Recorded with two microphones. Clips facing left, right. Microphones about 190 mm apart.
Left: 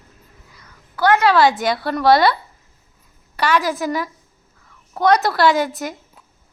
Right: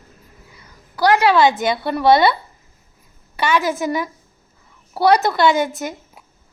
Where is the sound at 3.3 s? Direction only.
Centre (ahead or behind).